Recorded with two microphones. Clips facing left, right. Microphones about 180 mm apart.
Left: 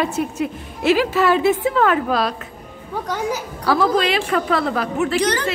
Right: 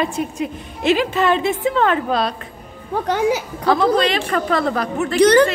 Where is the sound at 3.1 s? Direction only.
85° right.